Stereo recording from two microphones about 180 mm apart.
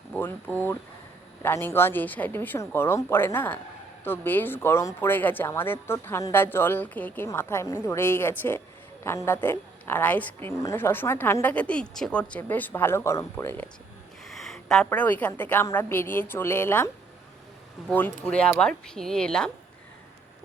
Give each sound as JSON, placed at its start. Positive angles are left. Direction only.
{"t": 0.1, "sound": "speech", "side_deg": 10}
{"t": 14.3, "sound": "speech", "side_deg": 0}
{"t": 17.9, "sound": "speech", "side_deg": 10}